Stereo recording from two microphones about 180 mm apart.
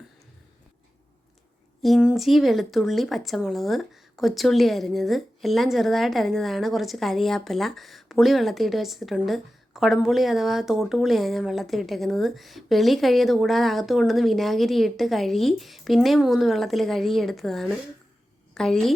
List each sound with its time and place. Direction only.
1.8 s a woman's voice: 5° right (ahead or behind)